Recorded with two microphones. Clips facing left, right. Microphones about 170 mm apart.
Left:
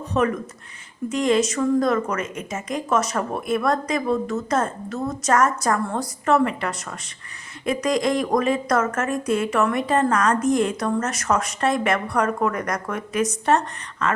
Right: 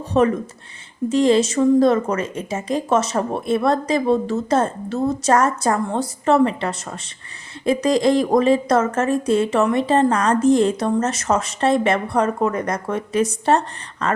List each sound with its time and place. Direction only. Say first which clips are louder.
0.1 s a woman's voice: right 5 dB; 30° right (ahead or behind)